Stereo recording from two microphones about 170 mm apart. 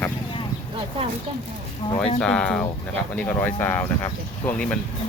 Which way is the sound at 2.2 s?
5° left (ahead or behind).